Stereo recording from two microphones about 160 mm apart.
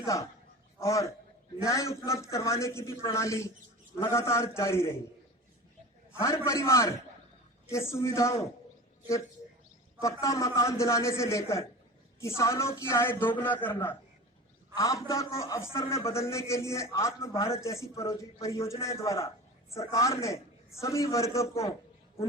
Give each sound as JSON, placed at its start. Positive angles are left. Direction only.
{"t": 0.0, "sound": "a man's voice", "side_deg": 20}
{"t": 6.1, "sound": "a man's voice", "side_deg": 20}
{"t": 10.0, "sound": "a man's voice", "side_deg": 20}